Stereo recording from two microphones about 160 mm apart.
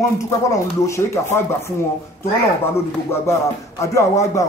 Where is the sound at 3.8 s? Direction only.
20° left (ahead or behind).